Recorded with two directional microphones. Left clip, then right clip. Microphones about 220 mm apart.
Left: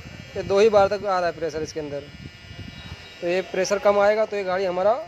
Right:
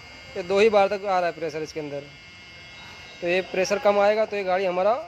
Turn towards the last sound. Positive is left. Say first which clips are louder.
# left 1 dB
turn(degrees=-5)  # may be behind; listen again after turning